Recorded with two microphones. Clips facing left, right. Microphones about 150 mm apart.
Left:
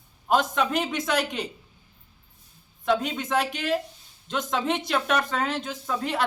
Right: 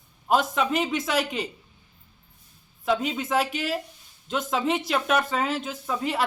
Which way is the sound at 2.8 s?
5° right (ahead or behind).